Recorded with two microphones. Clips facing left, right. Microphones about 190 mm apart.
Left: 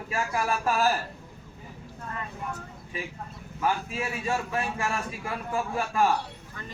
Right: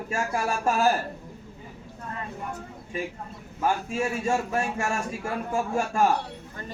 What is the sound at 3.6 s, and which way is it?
A man's voice, 45° right (ahead or behind).